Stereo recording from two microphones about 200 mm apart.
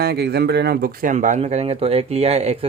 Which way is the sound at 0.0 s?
55° right (ahead or behind).